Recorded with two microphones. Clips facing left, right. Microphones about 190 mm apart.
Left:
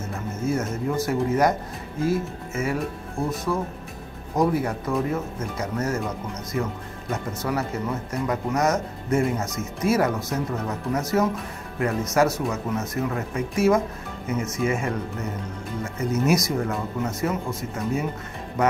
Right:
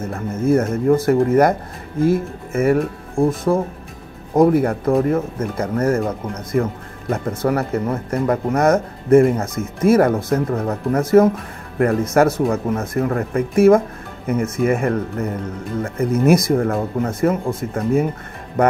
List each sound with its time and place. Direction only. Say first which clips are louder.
0.0 s speech: right 7 dB; 55° right (ahead or behind)